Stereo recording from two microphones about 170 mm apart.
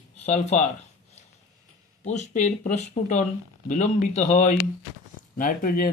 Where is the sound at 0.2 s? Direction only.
45° left (ahead or behind).